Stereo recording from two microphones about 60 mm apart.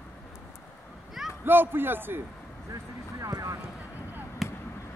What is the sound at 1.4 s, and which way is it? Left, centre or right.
Speech, right.